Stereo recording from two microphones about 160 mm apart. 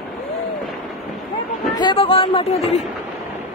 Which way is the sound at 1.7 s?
30° left (ahead or behind).